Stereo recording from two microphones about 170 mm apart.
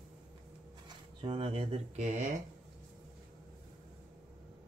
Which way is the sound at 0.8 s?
30° right (ahead or behind).